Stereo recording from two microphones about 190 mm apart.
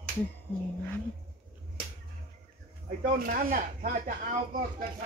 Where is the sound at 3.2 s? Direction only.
50° right (ahead or behind).